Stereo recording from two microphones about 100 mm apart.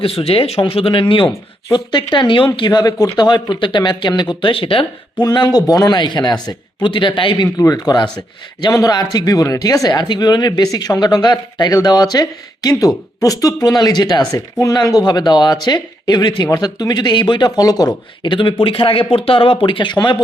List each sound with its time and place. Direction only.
0.0 s speech: 70° left (ahead or behind)
0.7 s speech: 65° left (ahead or behind)
1.7 s speech: 50° left (ahead or behind)
2.6 s speech: 45° left (ahead or behind); by 4.9 s 60° left (ahead or behind)
5.2 s speech: 45° left (ahead or behind)
7.6 s speech: 40° left (ahead or behind)
18.2 s speech: 55° left (ahead or behind)